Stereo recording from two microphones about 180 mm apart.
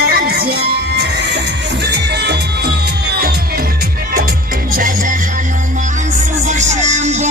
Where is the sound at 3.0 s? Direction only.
60° right (ahead or behind).